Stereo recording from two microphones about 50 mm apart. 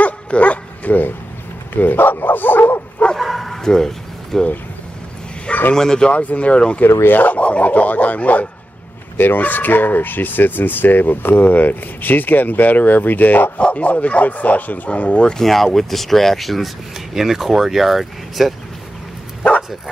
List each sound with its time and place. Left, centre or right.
0.0 s dog: left
1.7 s speech: left
3.2 s bow-wow: centre
5.5 s bow-wow: left
5.8 s speech: centre
6.1 s speech: left
9.1 s speech: left
13.6 s speech: left
15.4 s speech: centre